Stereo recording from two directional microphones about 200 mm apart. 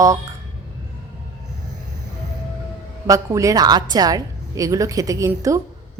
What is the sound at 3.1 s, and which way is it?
A woman's voice, 15° right (ahead or behind).